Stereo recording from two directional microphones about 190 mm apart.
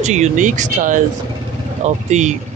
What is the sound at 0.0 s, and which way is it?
Speech, 40° right (ahead or behind).